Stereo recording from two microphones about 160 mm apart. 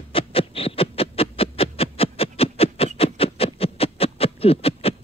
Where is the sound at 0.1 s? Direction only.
35° left (ahead or behind).